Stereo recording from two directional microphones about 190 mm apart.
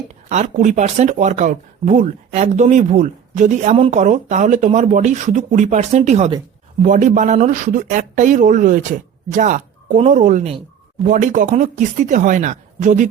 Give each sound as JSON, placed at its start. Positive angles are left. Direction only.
{"t": 0.3, "sound": "speech", "side_deg": -40}